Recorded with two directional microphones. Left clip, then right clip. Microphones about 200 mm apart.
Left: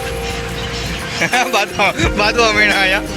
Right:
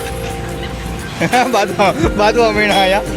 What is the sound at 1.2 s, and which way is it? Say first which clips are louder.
Speech: right 2 dB; 5° right (ahead or behind).